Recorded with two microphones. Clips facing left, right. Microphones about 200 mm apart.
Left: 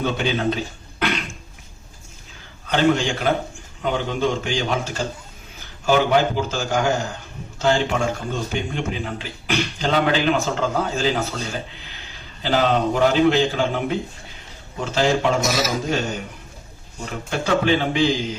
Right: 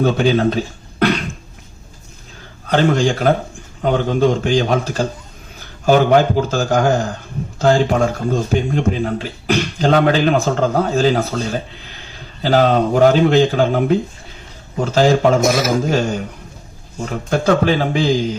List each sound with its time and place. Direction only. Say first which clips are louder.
0.0 s speech: right 7 dB; 40° right (ahead or behind)
2.6 s a man's voice: right 4 dB; 40° right (ahead or behind)
15.9 s a man's voice: right 6 dB; 40° right (ahead or behind)